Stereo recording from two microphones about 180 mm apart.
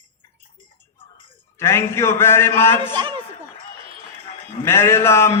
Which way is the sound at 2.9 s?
25° right (ahead or behind).